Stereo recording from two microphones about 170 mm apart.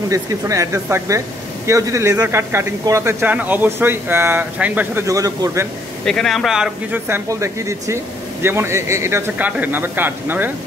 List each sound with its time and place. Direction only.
0.1 s speech: 20° right (ahead or behind)
6.0 s speech: centre (ahead or behind)